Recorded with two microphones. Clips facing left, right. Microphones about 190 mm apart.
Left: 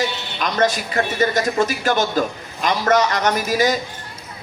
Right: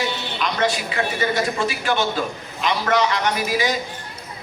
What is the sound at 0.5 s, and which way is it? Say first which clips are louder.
A man's voice: left 4 dB; 40° left (ahead or behind).